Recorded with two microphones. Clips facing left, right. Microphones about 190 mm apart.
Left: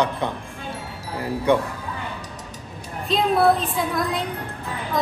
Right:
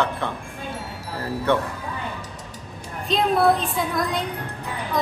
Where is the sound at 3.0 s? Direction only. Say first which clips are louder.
Left 1 dB; centre (ahead or behind).